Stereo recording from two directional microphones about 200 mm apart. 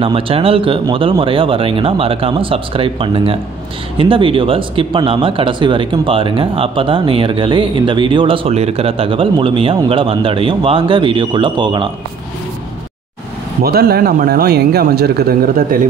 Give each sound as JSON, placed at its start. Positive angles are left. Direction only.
{"t": 0.0, "sound": "speech", "side_deg": -25}
{"t": 13.6, "sound": "speech", "side_deg": -50}